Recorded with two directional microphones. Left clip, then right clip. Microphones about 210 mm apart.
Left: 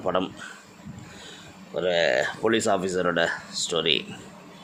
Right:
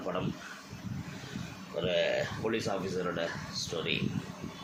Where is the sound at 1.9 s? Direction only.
55° left (ahead or behind).